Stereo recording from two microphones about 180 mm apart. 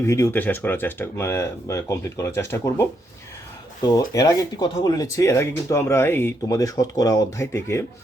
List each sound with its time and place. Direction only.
0.0 s speech: 15° left (ahead or behind)